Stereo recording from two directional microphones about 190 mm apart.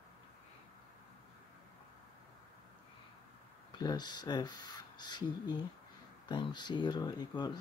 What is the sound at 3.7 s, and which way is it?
Speech, 20° left (ahead or behind).